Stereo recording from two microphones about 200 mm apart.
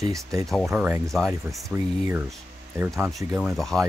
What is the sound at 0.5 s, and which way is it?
Speech, centre (ahead or behind).